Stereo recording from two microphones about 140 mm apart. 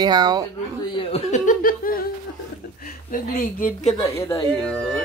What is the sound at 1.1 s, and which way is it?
Laughter, 60° left (ahead or behind).